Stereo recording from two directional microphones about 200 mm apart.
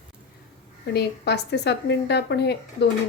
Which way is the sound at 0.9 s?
55° left (ahead or behind).